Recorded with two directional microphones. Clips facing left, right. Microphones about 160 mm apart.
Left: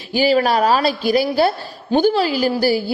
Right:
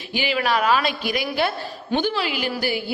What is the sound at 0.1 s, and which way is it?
A woman's voice, 40° left (ahead or behind).